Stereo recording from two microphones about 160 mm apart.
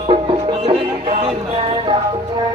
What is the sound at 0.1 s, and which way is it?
Music, 35° right (ahead or behind).